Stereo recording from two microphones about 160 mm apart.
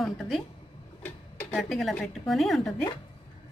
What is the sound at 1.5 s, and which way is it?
Speech, centre (ahead or behind).